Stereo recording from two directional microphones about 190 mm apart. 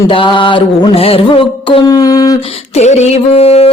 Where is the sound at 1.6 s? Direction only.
25° left (ahead or behind).